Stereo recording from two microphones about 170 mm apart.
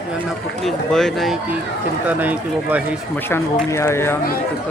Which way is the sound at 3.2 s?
15° left (ahead or behind).